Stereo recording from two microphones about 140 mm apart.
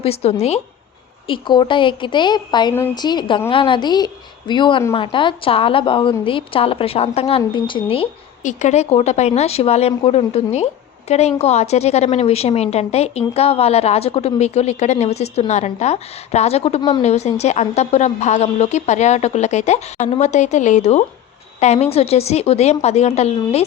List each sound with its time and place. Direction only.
0.0 s a woman's voice: 45° left (ahead or behind)
1.3 s a woman's voice: 35° left (ahead or behind)
8.4 s a woman's voice: 55° left (ahead or behind)